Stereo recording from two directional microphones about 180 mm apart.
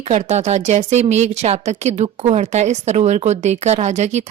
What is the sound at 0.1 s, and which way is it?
Speech, 40° right (ahead or behind).